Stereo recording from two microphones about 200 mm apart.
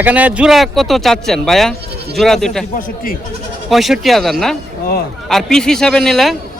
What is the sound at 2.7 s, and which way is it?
Speech, 45° left (ahead or behind).